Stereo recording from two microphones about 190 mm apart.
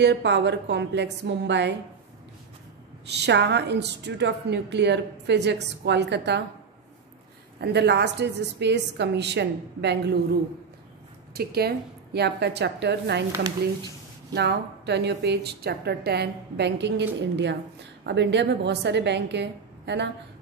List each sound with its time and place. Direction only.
0.0 s a woman's voice: 65° right (ahead or behind)
3.1 s a woman's voice: 65° right (ahead or behind)
7.6 s a woman's voice: 65° right (ahead or behind)
11.3 s a woman's voice: 55° right (ahead or behind)
14.3 s a woman's voice: 60° right (ahead or behind)